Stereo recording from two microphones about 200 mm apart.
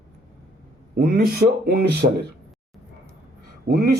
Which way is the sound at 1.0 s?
45° right (ahead or behind).